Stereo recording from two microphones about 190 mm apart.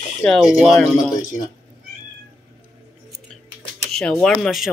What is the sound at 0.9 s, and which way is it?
Speech, 40° left (ahead or behind).